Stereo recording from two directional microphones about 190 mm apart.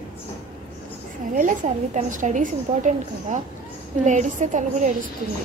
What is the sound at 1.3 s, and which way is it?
A woman's voice, 45° right (ahead or behind).